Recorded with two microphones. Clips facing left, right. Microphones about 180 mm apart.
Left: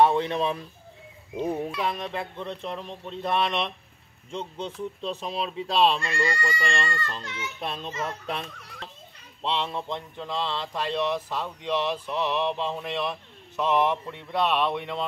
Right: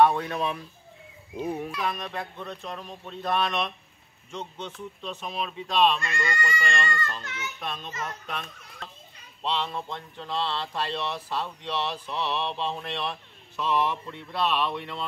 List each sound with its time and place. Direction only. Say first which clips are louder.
0.0 s speech: left 1 dB; 25° left (ahead or behind)